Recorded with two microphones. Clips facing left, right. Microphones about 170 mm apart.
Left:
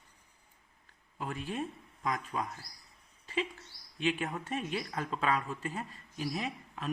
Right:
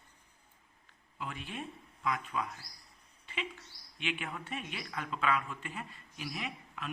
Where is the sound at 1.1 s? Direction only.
40° left (ahead or behind).